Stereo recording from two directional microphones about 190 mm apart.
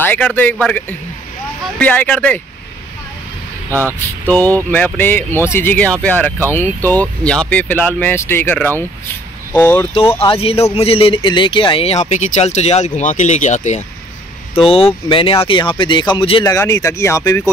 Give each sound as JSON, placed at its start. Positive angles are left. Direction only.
{"t": 0.0, "sound": "speech", "side_deg": 10}
{"t": 4.3, "sound": "speech", "side_deg": 10}
{"t": 10.1, "sound": "speech", "side_deg": 30}
{"t": 16.4, "sound": "speech", "side_deg": 15}